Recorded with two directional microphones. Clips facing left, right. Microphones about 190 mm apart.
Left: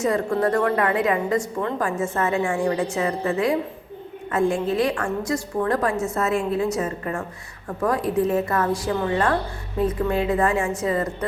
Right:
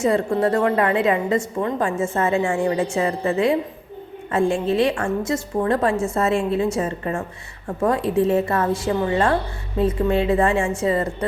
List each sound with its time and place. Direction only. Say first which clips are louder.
0.0 s a woman's voice: right 2 dB; 25° right (ahead or behind)